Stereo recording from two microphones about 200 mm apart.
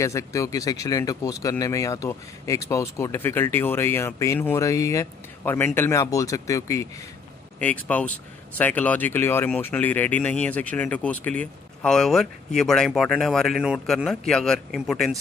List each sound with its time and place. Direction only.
0.0 s speech: 15° left (ahead or behind)